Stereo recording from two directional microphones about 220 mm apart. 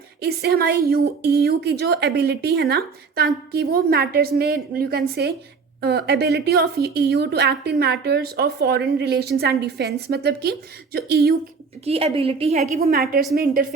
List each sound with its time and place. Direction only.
0.2 s a woman's voice: 45° right (ahead or behind)
11.9 s a woman's voice: 25° right (ahead or behind)
12.7 s a woman's voice: 40° right (ahead or behind)